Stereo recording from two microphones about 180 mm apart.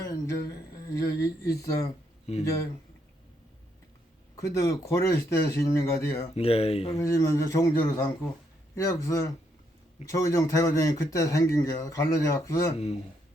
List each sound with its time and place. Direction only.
0.0 s a sound: 20° left (ahead or behind)
2.4 s speech: 20° left (ahead or behind)
4.4 s speech: 15° left (ahead or behind)
6.2 s speech: 35° left (ahead or behind)
6.9 s speech: 15° left (ahead or behind)